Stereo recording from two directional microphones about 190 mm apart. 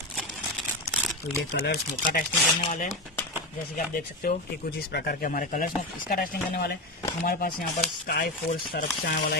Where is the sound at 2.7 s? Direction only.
45° left (ahead or behind).